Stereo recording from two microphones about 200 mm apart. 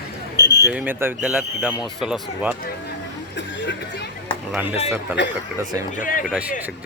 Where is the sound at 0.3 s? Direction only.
60° left (ahead or behind).